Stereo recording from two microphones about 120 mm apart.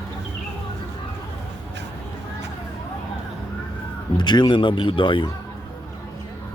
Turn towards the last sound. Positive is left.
turn(degrees=40)  # may be behind; listen again after turning